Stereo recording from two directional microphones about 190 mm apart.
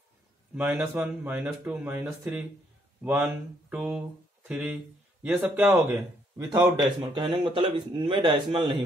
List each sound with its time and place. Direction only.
0.6 s speech: 5° right (ahead or behind)
6.3 s a man's voice: 20° right (ahead or behind)